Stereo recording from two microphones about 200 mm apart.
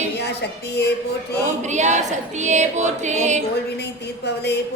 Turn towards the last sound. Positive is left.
turn(degrees=-35)  # may be behind; listen again after turning